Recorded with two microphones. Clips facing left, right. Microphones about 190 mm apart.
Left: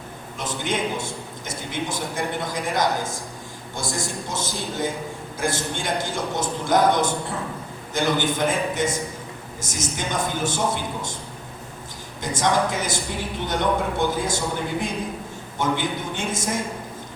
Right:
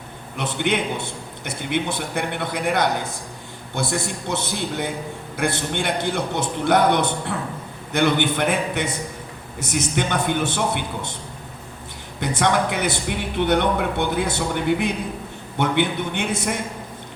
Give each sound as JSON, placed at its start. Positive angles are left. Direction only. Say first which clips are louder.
{"t": 0.3, "sound": "a man's voice", "louder": "right 4 dB", "side_deg": -65}
{"t": 12.2, "sound": "a man's voice", "louder": "right 1 dB", "side_deg": -65}